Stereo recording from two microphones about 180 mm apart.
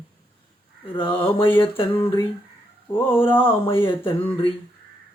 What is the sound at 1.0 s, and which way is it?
Mantra, 30° left (ahead or behind).